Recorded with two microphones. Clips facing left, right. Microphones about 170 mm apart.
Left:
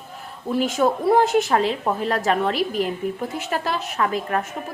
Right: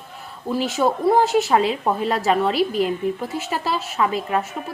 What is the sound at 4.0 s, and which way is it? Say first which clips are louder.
Speech: right 2 dB; 10° right (ahead or behind).